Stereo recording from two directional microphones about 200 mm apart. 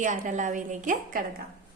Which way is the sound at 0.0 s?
40° right (ahead or behind).